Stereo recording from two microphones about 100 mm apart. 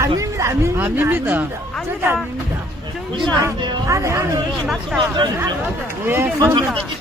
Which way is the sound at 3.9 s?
30° right (ahead or behind).